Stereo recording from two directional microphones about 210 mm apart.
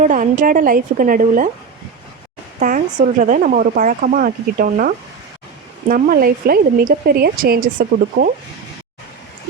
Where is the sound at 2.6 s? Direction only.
40° right (ahead or behind).